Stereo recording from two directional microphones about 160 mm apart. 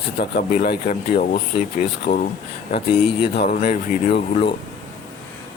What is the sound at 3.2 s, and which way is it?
Speech, 85° left.